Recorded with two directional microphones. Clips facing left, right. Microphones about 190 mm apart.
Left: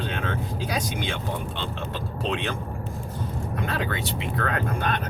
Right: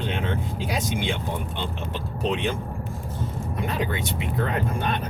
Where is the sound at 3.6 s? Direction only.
20° right (ahead or behind).